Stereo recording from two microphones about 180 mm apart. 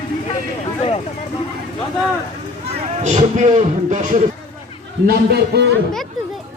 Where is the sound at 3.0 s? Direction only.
40° right (ahead or behind).